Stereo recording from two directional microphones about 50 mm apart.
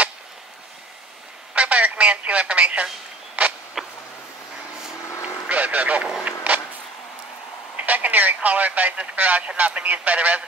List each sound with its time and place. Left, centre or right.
1.5 s telephone: right
3.4 s vehicle: right
3.8 s a sound: centre
5.2 s vehicle: right
7.7 s a man's voice: right